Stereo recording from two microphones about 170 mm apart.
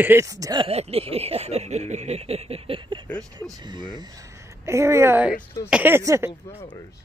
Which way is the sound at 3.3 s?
20° right (ahead or behind).